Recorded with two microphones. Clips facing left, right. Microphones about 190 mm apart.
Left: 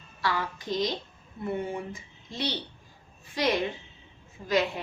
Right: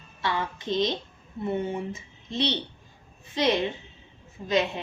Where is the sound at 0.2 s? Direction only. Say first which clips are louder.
Right 1 dB; 25° right (ahead or behind).